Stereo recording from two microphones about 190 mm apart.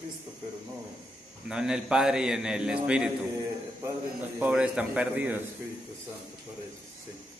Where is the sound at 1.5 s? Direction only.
5° right (ahead or behind).